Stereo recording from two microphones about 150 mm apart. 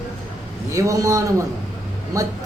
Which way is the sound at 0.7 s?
20° right (ahead or behind).